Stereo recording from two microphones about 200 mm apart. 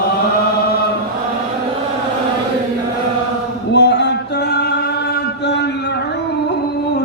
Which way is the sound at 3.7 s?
55° left (ahead or behind).